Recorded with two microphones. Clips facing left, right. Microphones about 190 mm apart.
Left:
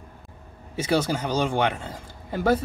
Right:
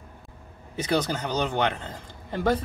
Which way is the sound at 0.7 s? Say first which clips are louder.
Left 2 dB; 10° left (ahead or behind).